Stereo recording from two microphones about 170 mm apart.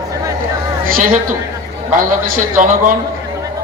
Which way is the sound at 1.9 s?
50° right (ahead or behind).